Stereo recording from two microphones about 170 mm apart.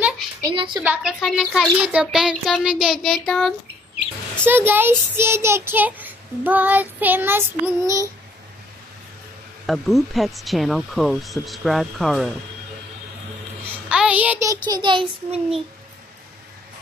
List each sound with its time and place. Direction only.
0.4 s a sound: 25° right (ahead or behind)
0.7 s a child's voice: centre (ahead or behind)
4.5 s a child's voice: 10° right (ahead or behind)
9.7 s a child's voice: centre (ahead or behind)
13.8 s a child's voice: 5° right (ahead or behind); by 15.6 s 30° right (ahead or behind)